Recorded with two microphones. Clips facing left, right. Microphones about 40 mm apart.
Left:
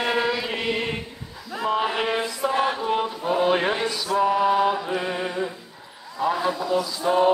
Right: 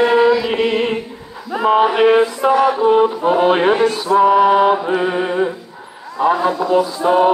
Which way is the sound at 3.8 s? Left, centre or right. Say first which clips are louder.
Right 10 dB; right.